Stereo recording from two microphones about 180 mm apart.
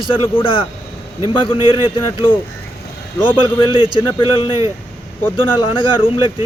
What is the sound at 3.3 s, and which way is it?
A man's voice, 30° left (ahead or behind).